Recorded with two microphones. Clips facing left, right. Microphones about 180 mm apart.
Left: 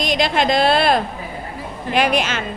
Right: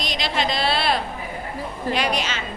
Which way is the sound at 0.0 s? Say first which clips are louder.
Left 7 dB; 50° left (ahead or behind).